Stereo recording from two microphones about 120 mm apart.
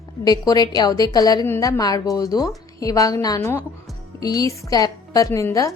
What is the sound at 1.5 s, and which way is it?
A woman's voice, 20° left (ahead or behind).